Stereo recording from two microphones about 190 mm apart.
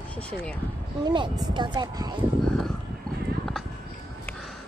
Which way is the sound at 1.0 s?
25° right (ahead or behind).